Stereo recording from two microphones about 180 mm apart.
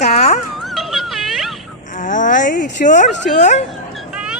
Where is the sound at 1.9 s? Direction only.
45° left (ahead or behind).